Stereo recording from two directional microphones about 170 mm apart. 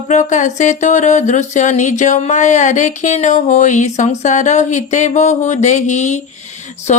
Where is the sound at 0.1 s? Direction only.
45° left (ahead or behind).